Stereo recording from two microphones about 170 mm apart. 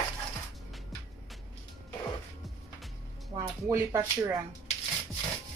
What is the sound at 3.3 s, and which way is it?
Speech, 15° right (ahead or behind).